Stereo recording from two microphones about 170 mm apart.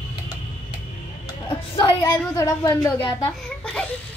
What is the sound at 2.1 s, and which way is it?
Speech, 20° left (ahead or behind).